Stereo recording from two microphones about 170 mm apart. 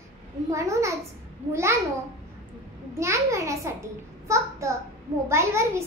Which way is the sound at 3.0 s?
15° right (ahead or behind).